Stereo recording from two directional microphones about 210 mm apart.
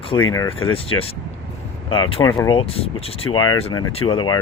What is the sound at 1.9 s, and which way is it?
Speech, 25° left (ahead or behind).